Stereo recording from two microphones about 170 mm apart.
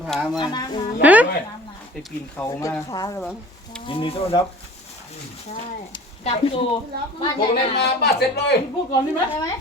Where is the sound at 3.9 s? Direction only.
30° left (ahead or behind).